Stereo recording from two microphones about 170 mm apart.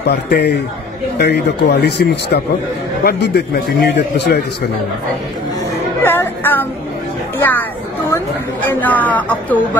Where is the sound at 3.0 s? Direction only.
65° left (ahead or behind).